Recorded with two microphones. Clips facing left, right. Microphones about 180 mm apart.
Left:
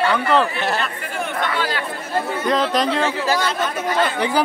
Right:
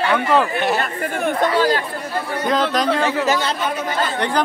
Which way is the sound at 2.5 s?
Centre (ahead or behind).